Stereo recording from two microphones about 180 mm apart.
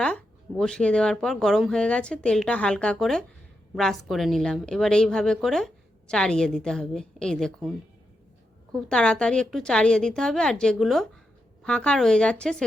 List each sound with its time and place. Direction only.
0.6 s a woman's voice: 5° left (ahead or behind)
8.7 s a woman's voice: 5° left (ahead or behind)